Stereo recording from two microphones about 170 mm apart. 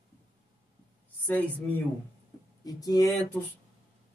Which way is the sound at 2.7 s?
20° left (ahead or behind).